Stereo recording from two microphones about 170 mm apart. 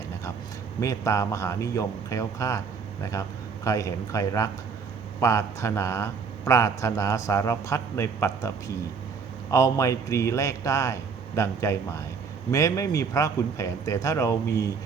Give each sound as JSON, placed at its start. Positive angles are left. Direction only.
{"t": 0.8, "sound": "a man's voice", "side_deg": 20}